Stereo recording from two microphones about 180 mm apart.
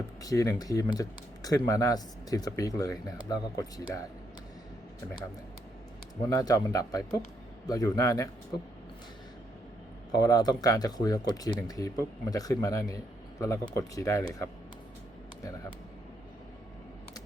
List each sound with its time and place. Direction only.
0.2 s speech: 20° left (ahead or behind)
6.2 s speech: 20° left (ahead or behind)
10.1 s speech: 20° left (ahead or behind)